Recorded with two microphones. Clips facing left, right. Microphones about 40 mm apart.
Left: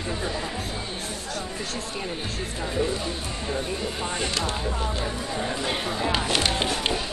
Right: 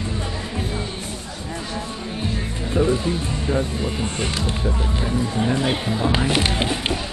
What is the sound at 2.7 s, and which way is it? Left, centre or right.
Speech, right.